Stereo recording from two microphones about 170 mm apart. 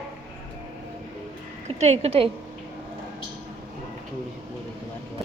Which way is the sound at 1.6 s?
40° right (ahead or behind).